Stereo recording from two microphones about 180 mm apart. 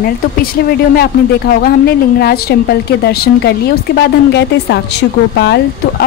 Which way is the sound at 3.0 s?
65° left (ahead or behind).